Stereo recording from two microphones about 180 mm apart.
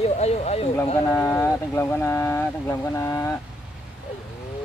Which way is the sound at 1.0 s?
15° left (ahead or behind).